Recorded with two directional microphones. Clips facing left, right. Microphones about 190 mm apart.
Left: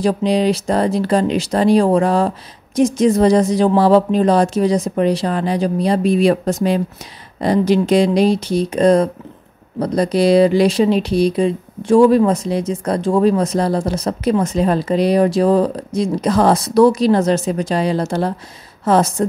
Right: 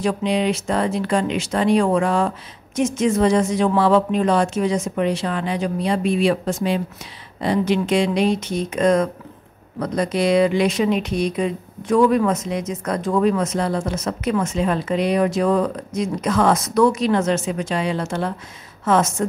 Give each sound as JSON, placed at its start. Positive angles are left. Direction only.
{"t": 0.0, "sound": "speech", "side_deg": 35}